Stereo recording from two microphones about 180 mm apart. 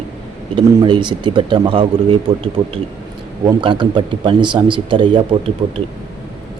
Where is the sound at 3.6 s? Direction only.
25° right (ahead or behind).